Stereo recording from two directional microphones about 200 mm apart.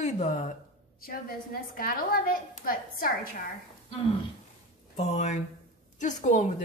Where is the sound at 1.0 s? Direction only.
45° left (ahead or behind).